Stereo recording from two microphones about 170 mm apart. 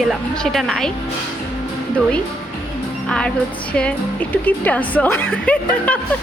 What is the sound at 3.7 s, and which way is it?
A woman's voice, 5° left (ahead or behind).